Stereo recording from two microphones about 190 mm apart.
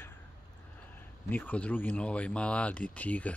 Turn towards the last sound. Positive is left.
turn(degrees=10)  # may be behind; listen again after turning